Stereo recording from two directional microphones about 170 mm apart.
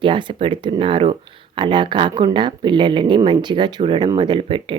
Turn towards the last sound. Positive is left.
turn(degrees=-30)  # may be behind; listen again after turning